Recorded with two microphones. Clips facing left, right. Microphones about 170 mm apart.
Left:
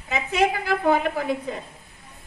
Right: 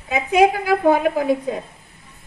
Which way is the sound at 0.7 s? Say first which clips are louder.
Right 5 dB; 50° right (ahead or behind).